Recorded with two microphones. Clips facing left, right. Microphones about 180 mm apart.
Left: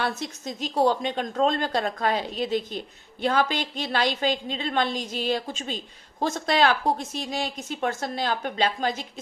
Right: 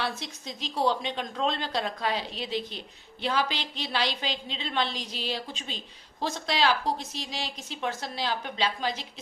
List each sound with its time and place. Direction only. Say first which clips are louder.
0.0 s a woman's voice: left 4 dB; 45° left (ahead or behind)